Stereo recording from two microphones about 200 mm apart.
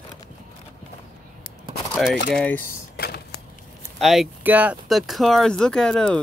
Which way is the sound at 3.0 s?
50° left (ahead or behind).